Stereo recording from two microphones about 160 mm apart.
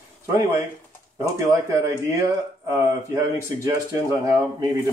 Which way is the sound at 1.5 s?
20° right (ahead or behind).